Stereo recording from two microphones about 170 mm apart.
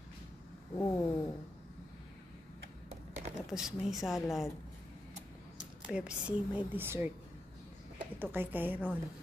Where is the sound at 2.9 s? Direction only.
40° right (ahead or behind).